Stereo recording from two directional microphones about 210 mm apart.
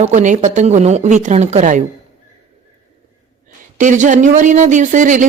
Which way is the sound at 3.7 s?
35° right (ahead or behind).